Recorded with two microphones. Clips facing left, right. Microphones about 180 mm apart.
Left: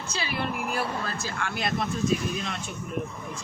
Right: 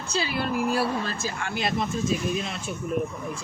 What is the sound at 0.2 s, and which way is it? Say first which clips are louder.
Speech: right 5 dB; 30° right (ahead or behind).